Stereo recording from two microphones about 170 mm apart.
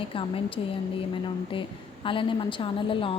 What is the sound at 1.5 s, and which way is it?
A woman's voice, 30° left (ahead or behind).